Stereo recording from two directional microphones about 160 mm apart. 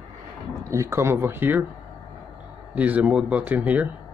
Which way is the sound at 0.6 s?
20° right (ahead or behind).